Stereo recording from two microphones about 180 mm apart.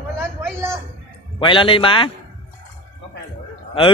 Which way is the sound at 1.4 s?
30° left (ahead or behind).